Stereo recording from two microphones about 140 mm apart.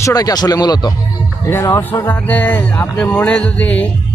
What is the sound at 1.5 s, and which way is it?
Speech, 15° left (ahead or behind).